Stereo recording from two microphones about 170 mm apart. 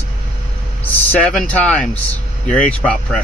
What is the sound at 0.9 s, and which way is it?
Speech, 10° left (ahead or behind).